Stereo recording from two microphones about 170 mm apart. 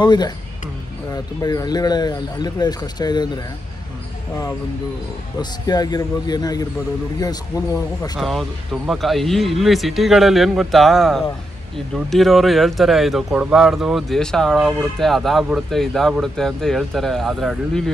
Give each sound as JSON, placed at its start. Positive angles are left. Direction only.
{"t": 0.0, "sound": "speech", "side_deg": 25}
{"t": 5.4, "sound": "speech", "side_deg": 25}
{"t": 8.2, "sound": "speech", "side_deg": 0}